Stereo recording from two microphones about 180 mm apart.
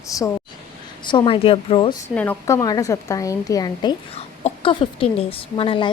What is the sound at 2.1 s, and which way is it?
A woman's voice, 10° left (ahead or behind).